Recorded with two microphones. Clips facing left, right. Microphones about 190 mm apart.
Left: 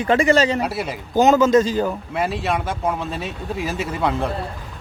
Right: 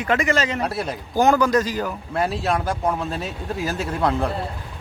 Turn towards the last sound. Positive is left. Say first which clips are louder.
# even
turn(degrees=0)  # may be behind; listen again after turning